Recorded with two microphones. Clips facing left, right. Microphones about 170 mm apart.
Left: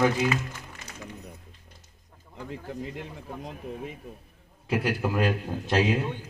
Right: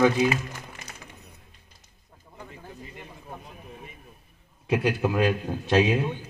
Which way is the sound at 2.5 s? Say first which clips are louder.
Left 10 dB; 90° left.